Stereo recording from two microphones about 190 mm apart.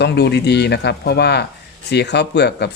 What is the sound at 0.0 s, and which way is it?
Speech, 60° left (ahead or behind).